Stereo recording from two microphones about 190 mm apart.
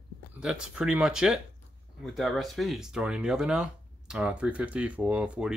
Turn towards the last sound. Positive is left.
turn(degrees=-5)  # may be behind; listen again after turning